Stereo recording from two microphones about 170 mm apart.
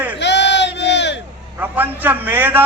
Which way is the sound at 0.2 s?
90° left.